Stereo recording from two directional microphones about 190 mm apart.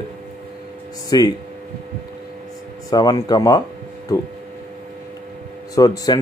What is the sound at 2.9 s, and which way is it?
Speech, 20° left (ahead or behind).